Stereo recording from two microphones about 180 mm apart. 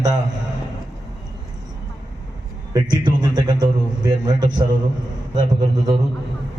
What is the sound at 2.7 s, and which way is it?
A man's voice, 25° right (ahead or behind).